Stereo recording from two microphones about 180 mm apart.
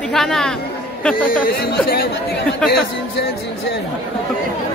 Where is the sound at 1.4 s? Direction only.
60° left (ahead or behind).